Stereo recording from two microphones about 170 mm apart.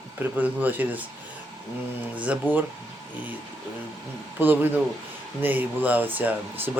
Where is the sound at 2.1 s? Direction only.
10° right (ahead or behind).